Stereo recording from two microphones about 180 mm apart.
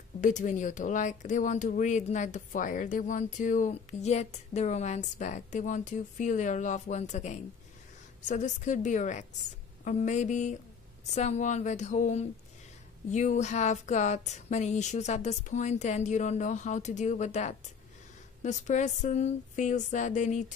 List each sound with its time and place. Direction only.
0.2 s speech: 45° left (ahead or behind)